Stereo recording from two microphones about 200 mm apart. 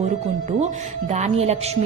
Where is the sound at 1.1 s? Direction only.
35° right (ahead or behind).